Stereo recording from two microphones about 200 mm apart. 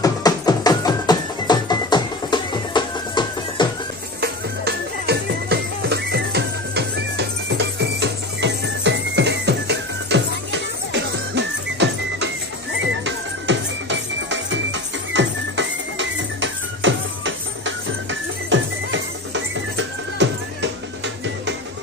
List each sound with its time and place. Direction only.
0.0 s music: 20° left (ahead or behind)
4.2 s music: 55° right (ahead or behind)